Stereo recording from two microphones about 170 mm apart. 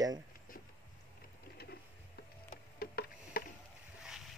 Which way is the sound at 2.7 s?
65° left (ahead or behind).